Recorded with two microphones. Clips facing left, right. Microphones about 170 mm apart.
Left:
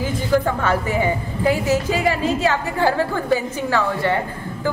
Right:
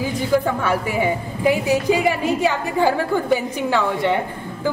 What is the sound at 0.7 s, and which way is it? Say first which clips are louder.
A woman's voice: even; 15° right (ahead or behind).